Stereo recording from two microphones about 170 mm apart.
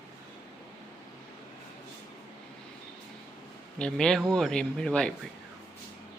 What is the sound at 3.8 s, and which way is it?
Speech, 5° left (ahead or behind).